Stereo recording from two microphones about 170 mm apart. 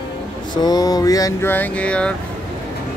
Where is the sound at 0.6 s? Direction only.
20° left (ahead or behind); by 2.1 s 5° left (ahead or behind).